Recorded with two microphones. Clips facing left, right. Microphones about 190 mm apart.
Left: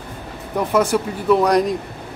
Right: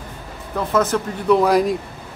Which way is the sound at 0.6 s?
10° left (ahead or behind).